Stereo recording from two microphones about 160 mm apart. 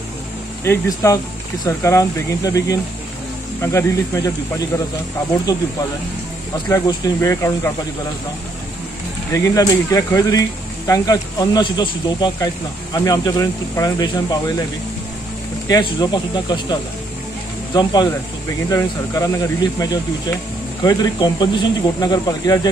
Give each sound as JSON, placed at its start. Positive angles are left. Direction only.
{"t": 0.7, "sound": "speech", "side_deg": 20}
{"t": 6.7, "sound": "speech", "side_deg": 20}
{"t": 9.3, "sound": "speech", "side_deg": 20}
{"t": 15.7, "sound": "speech", "side_deg": 25}
{"t": 18.7, "sound": "speech", "side_deg": 20}